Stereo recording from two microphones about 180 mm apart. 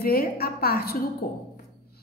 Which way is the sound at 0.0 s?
55° left (ahead or behind).